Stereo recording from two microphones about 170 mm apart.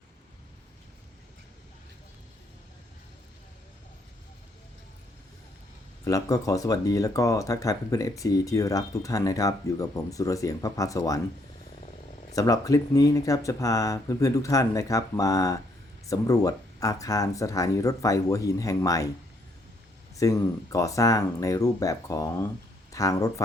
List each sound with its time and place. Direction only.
6.1 s speech: 20° left (ahead or behind)
12.3 s speech: 20° left (ahead or behind)
20.1 s speech: 20° left (ahead or behind)